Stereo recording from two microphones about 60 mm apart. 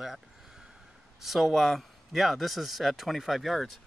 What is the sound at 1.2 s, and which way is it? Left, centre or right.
Speech, centre.